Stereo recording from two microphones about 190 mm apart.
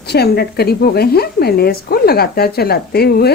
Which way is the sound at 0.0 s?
60° left (ahead or behind).